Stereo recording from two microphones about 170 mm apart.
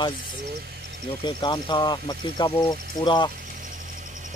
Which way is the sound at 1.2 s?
25° left (ahead or behind).